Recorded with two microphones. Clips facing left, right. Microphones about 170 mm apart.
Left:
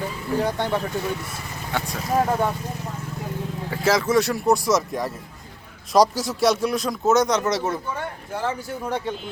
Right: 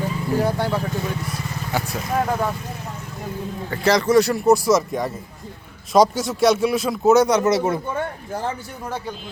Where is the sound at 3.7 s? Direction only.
5° left (ahead or behind).